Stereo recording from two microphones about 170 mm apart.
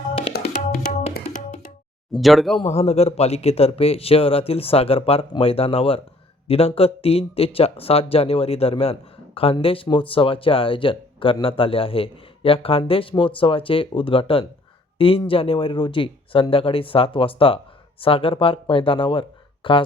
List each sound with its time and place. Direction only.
0.5 s tabla: 50° left (ahead or behind)
2.1 s speech: centre (ahead or behind)
2.6 s speech: 40° left (ahead or behind)